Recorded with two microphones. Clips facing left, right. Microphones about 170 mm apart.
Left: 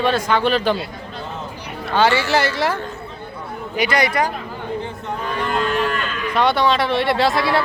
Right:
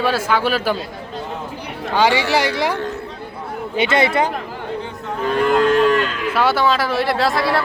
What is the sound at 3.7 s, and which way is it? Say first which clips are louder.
Speech: right 2 dB; 25° right (ahead or behind).